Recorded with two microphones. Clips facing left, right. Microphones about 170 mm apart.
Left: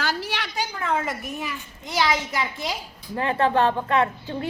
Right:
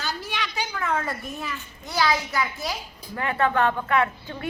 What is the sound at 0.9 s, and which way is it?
A woman's voice, 15° left (ahead or behind).